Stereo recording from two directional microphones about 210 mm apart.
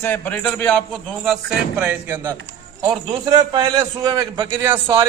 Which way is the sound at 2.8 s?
20° right (ahead or behind).